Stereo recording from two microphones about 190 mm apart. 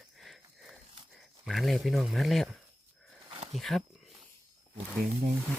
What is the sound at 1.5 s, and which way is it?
Speech, centre (ahead or behind).